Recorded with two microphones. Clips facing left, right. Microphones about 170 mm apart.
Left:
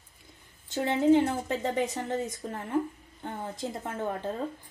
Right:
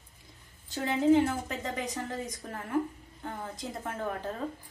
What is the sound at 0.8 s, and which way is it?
A woman's voice, 30° left (ahead or behind).